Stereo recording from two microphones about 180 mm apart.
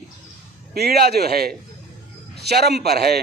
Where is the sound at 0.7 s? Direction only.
60° right (ahead or behind).